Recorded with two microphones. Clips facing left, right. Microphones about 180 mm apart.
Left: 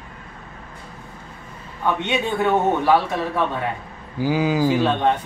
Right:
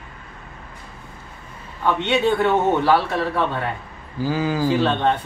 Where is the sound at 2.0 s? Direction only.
15° left (ahead or behind).